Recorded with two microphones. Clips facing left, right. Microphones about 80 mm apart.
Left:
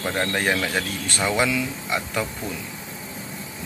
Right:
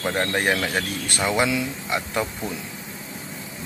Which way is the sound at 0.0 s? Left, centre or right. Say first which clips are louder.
Right 1 dB; centre.